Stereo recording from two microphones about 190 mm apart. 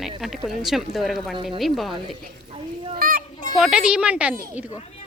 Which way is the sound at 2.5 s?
30° right (ahead or behind).